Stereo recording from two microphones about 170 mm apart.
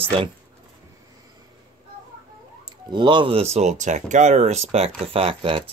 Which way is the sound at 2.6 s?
25° right (ahead or behind).